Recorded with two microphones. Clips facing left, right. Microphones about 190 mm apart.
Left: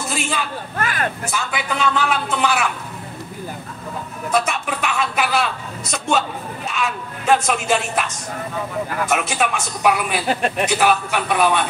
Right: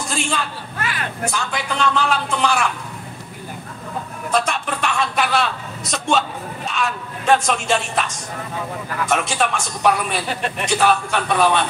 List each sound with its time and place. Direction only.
0.0 s a sound: 5° left (ahead or behind)
0.7 s speech: 50° left (ahead or behind)
1.2 s a man's voice: 5° left (ahead or behind)
4.3 s a man's voice: 5° left (ahead or behind)